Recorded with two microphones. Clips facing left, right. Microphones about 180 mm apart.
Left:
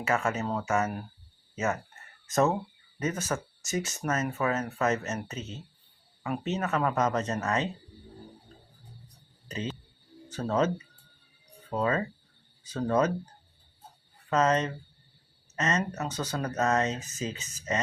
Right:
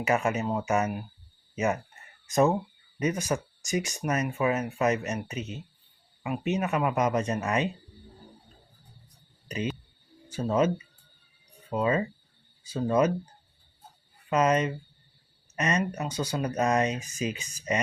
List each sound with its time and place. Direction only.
0.0 s speech: 15° right (ahead or behind)
9.5 s speech: 15° right (ahead or behind)
14.3 s speech: 10° right (ahead or behind)